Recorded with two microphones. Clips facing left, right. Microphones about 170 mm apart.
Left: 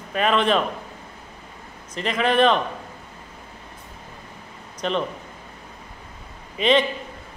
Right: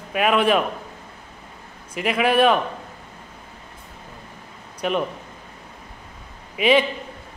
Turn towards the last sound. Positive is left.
turn(degrees=-5)  # may be behind; listen again after turning